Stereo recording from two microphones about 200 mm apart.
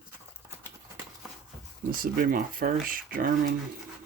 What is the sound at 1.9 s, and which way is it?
Speech, 45° right (ahead or behind).